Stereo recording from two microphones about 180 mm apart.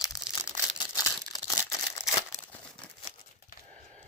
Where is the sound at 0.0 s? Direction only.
20° left (ahead or behind).